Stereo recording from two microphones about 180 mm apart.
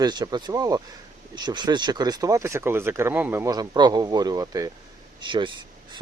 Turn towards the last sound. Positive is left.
turn(degrees=-25)  # may be behind; listen again after turning